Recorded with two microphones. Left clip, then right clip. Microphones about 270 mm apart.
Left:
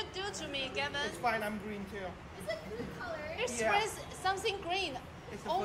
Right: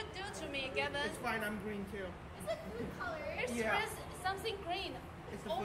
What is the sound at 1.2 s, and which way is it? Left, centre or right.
Speech, left.